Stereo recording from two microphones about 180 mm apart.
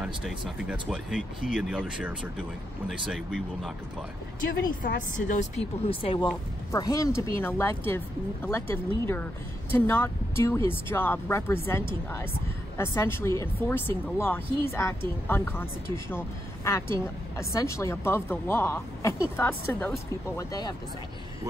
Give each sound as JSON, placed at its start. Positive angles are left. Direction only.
{"t": 0.0, "sound": "speech", "side_deg": -5}
{"t": 5.3, "sound": "speech", "side_deg": 40}
{"t": 6.7, "sound": "speech", "side_deg": 20}
{"t": 20.3, "sound": "speech", "side_deg": 20}